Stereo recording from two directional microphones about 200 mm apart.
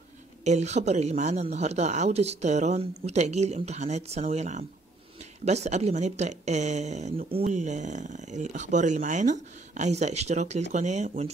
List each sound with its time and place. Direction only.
0.4 s speech: 35° right (ahead or behind)